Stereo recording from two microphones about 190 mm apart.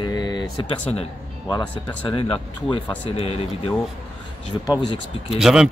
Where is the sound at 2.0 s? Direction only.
25° left (ahead or behind).